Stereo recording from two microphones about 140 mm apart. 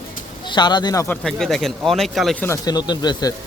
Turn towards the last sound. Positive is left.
turn(degrees=30)  # may be behind; listen again after turning